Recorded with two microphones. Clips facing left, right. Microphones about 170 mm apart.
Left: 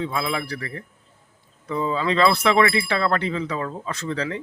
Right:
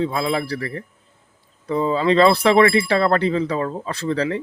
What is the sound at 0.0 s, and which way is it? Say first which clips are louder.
Speech: right 5 dB; 35° right (ahead or behind).